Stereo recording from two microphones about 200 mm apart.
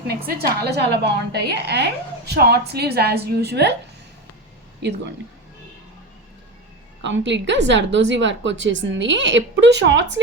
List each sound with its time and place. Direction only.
0.3 s a woman's voice: 55° right (ahead or behind)
7.0 s a woman's voice: 65° right (ahead or behind)